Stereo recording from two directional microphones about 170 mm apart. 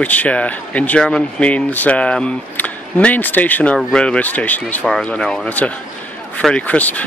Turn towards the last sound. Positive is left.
turn(degrees=10)  # may be behind; listen again after turning